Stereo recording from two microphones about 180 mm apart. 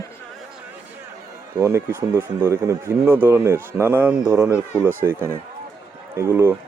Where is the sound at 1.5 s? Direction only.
15° right (ahead or behind).